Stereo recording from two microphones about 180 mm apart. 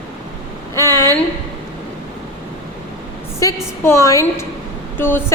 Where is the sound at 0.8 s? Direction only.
20° right (ahead or behind).